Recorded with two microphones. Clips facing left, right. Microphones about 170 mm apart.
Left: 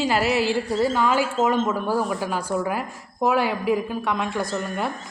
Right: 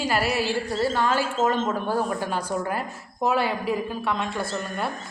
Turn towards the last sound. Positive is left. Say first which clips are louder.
# left 2 dB
turn(degrees=15)  # may be behind; listen again after turning